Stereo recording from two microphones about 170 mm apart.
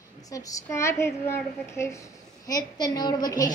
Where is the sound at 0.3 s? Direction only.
20° left (ahead or behind).